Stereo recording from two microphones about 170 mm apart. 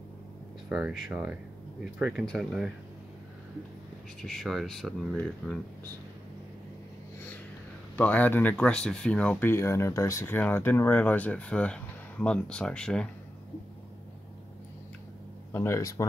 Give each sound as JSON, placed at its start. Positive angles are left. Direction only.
{"t": 0.7, "sound": "speech", "side_deg": -5}
{"t": 4.2, "sound": "speech", "side_deg": 0}
{"t": 7.9, "sound": "speech", "side_deg": 10}
{"t": 15.5, "sound": "speech", "side_deg": 15}